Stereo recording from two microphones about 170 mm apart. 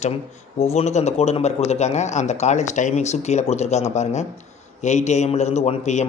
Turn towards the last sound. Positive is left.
turn(degrees=40)  # may be behind; listen again after turning